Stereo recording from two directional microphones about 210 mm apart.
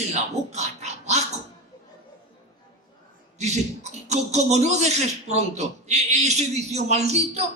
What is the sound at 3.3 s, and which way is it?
A man's voice, 30° right (ahead or behind).